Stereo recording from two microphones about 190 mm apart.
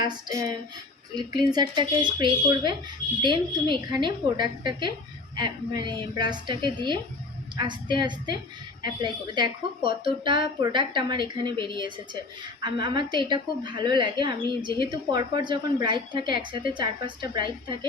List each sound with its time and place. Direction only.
0.1 s a woman's voice: 20° right (ahead or behind)